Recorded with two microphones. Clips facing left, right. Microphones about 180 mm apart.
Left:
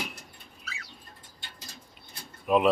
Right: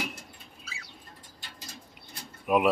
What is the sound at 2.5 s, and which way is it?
Speech, 15° right (ahead or behind).